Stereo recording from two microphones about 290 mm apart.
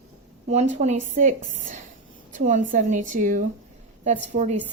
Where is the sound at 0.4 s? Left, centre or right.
Right.